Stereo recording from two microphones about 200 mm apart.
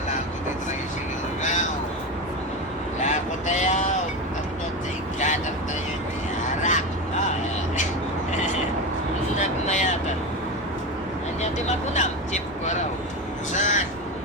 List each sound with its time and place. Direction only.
1.4 s vehicle: 35° left (ahead or behind)
3.0 s vehicle: 35° left (ahead or behind)
6.6 s vehicle: 35° left (ahead or behind)
9.3 s vehicle: 35° left (ahead or behind)
11.9 s vehicle: 35° left (ahead or behind)
13.5 s crow: 35° left (ahead or behind)